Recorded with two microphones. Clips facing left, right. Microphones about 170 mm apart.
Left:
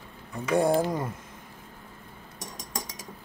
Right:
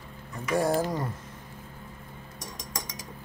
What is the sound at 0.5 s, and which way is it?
Speech, 20° left (ahead or behind).